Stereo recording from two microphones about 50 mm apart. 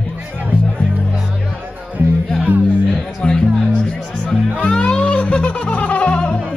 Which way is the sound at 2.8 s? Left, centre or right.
Centre.